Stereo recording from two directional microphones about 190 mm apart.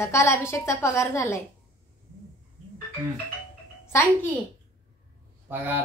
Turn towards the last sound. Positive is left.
turn(degrees=-10)  # may be behind; listen again after turning